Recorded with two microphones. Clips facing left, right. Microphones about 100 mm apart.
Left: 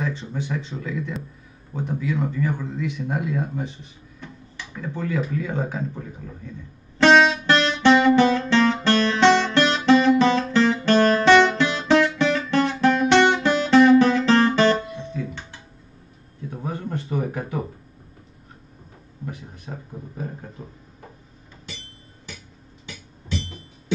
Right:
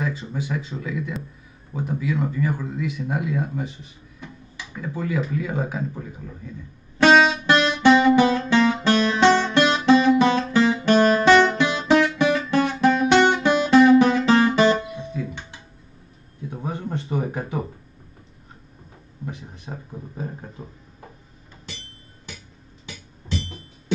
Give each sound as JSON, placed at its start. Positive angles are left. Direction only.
{"t": 0.0, "sound": "speech", "side_deg": -5}
{"t": 7.0, "sound": "music", "side_deg": -10}
{"t": 16.4, "sound": "a sound", "side_deg": -20}
{"t": 19.2, "sound": "speech", "side_deg": -25}